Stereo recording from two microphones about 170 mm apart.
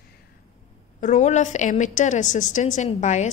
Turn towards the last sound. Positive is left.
turn(degrees=45)  # may be behind; listen again after turning